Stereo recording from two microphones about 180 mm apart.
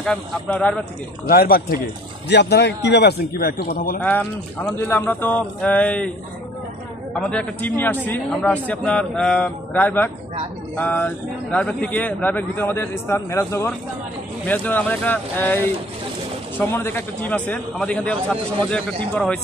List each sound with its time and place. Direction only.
0.0 s speech: 5° left (ahead or behind)
1.2 s a man's voice: 55° left (ahead or behind)
2.2 s a man's voice: 70° left (ahead or behind); by 4.0 s 55° left (ahead or behind)
4.0 s speech: 10° left (ahead or behind)
7.2 s speech: 5° left (ahead or behind)